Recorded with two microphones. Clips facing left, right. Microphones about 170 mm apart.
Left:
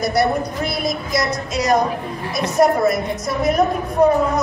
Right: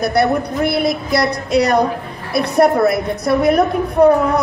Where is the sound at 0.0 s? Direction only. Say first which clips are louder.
Right 3 dB; 60° right (ahead or behind).